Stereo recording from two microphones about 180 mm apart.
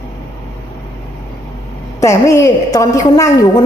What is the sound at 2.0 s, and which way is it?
A woman's voice, 15° left (ahead or behind).